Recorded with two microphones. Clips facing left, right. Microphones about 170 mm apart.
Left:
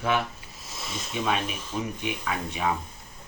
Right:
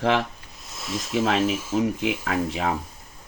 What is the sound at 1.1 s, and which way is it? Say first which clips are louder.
Speech: right 6 dB; 90° right.